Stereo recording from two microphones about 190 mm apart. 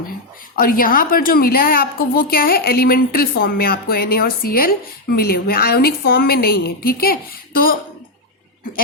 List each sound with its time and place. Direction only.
0.5 s a woman's voice: 50° left (ahead or behind)